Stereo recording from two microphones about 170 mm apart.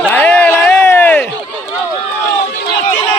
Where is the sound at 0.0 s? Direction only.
10° left (ahead or behind).